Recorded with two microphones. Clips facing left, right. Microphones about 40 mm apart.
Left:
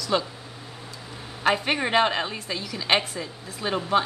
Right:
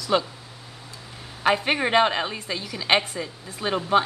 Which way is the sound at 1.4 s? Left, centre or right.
Centre.